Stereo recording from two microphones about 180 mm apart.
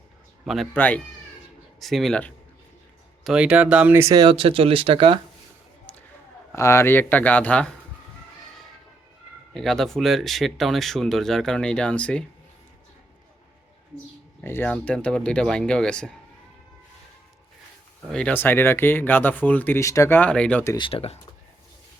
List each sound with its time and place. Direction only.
0.4 s speech: centre (ahead or behind); by 5.2 s 30° right (ahead or behind)
6.5 s speech: 15° left (ahead or behind)
9.6 s speech: centre (ahead or behind)
14.4 s speech: 10° left (ahead or behind)
18.1 s speech: 5° left (ahead or behind)
20.7 s speech: 30° left (ahead or behind)